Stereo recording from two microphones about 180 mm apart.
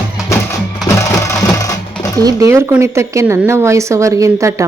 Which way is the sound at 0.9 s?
15° left (ahead or behind).